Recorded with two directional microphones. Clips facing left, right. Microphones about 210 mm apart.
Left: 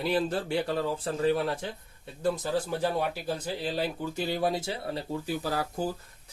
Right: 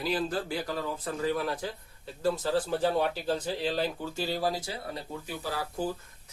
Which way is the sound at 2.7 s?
10° left (ahead or behind).